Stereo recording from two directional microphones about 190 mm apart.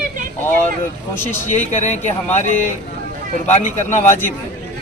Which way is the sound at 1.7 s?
35° left (ahead or behind).